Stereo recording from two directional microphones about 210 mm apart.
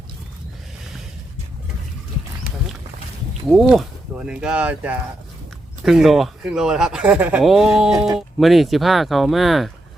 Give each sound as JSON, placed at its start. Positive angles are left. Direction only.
{"t": 3.5, "sound": "speech", "side_deg": 0}
{"t": 7.9, "sound": "speech", "side_deg": -15}
{"t": 8.4, "sound": "speech", "side_deg": 0}